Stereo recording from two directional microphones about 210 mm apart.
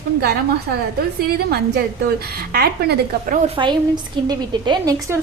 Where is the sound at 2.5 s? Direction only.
50° right (ahead or behind).